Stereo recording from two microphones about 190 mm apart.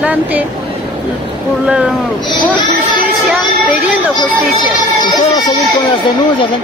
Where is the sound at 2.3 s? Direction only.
25° left (ahead or behind).